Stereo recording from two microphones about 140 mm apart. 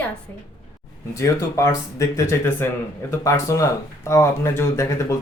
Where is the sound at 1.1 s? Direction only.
20° left (ahead or behind).